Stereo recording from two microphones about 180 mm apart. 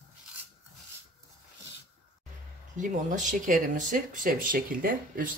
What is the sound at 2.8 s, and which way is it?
Speech, 45° right (ahead or behind).